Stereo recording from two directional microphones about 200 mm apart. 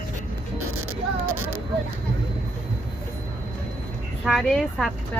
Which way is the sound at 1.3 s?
90° right.